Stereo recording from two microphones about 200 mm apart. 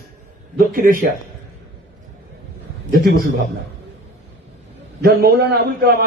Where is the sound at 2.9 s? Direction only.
45° right (ahead or behind).